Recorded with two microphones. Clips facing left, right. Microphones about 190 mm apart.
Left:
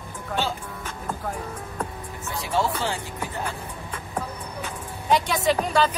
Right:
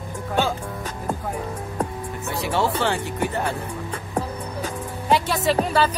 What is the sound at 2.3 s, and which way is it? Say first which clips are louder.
Speech: right 2 dB; 65° right (ahead or behind).